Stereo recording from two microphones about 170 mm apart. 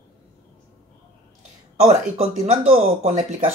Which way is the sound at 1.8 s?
40° right (ahead or behind).